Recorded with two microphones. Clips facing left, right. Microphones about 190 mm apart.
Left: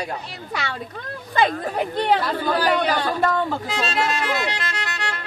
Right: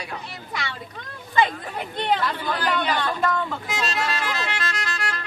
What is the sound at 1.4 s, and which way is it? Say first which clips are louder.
Speech: left 8 dB; 45° left (ahead or behind).